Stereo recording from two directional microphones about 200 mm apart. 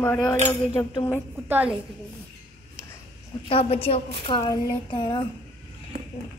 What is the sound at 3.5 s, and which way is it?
A woman's voice, 30° left (ahead or behind).